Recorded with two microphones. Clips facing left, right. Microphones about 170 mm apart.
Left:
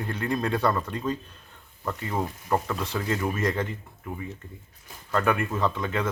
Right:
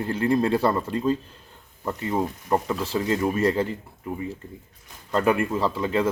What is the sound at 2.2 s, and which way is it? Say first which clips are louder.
Speech: right 2 dB; 20° right (ahead or behind).